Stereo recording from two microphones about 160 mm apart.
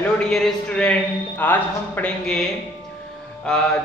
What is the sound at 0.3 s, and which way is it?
A man's voice, 5° left (ahead or behind).